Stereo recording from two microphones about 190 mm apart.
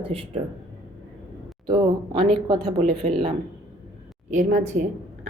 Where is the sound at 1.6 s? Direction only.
25° right (ahead or behind).